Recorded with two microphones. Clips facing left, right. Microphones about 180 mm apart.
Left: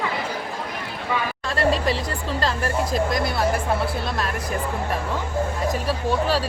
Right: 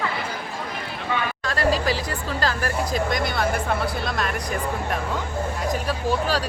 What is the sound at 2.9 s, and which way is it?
Speech, centre (ahead or behind).